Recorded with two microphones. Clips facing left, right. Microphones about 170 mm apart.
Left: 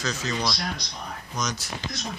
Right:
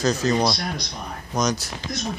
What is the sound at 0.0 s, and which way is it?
Speech, 40° right (ahead or behind).